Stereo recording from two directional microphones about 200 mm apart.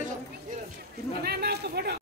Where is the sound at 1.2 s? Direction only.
50° right (ahead or behind).